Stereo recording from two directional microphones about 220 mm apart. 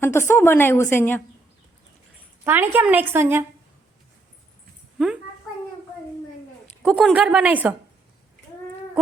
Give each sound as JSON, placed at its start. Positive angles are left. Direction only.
{"t": 0.0, "sound": "a woman's voice", "side_deg": 10}
{"t": 2.4, "sound": "a woman's voice", "side_deg": -10}
{"t": 4.9, "sound": "a child's voice", "side_deg": -5}
{"t": 6.8, "sound": "a woman's voice", "side_deg": 0}